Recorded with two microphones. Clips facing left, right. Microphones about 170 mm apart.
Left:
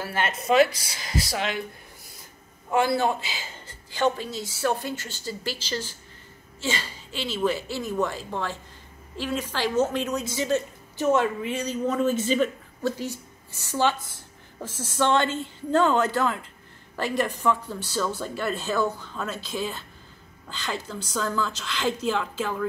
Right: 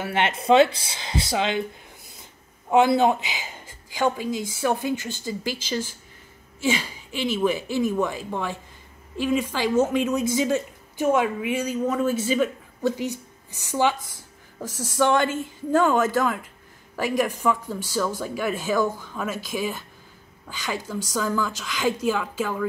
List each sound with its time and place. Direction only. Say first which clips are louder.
0.0 s speech: right 4 dB; 25° right (ahead or behind)
2.7 s speech: right 5 dB; 20° right (ahead or behind)